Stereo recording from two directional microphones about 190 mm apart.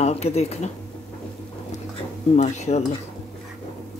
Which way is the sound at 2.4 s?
35° left (ahead or behind).